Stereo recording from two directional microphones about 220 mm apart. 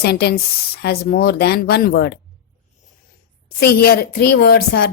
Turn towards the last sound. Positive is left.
turn(degrees=45)  # may be behind; listen again after turning